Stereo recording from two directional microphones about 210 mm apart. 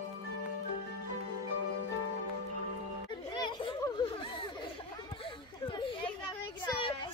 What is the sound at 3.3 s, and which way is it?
Children playing, 20° left (ahead or behind).